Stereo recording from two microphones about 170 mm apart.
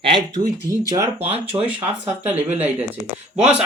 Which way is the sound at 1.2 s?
35° right (ahead or behind).